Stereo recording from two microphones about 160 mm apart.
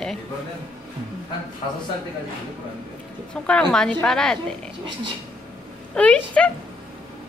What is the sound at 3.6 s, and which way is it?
Speech, 5° left (ahead or behind).